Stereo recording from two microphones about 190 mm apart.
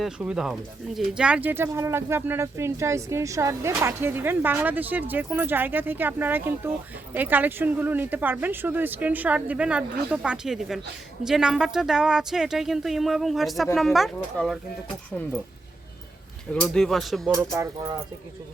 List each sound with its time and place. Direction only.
0.0 s speech: 5° right (ahead or behind)
16.6 s speech: centre (ahead or behind)
17.3 s speech: 15° right (ahead or behind)